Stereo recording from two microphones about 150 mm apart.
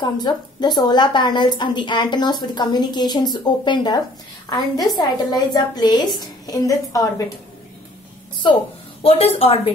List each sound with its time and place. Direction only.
0.0 s a woman's voice: 30° left (ahead or behind)
9.0 s a woman's voice: 40° left (ahead or behind)